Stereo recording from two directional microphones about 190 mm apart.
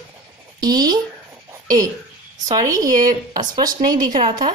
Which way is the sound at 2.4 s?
20° right (ahead or behind).